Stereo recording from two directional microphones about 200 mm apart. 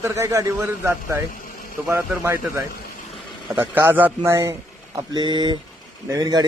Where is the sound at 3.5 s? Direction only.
10° right (ahead or behind).